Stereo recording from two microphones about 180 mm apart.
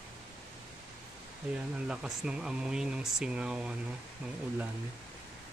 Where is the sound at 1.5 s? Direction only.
5° right (ahead or behind).